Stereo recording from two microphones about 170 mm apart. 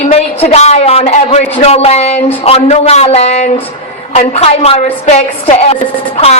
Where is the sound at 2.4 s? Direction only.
35° left (ahead or behind).